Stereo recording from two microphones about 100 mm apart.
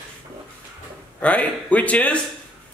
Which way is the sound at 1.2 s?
15° left (ahead or behind).